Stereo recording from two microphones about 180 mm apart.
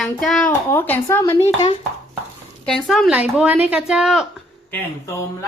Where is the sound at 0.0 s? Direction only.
Centre (ahead or behind).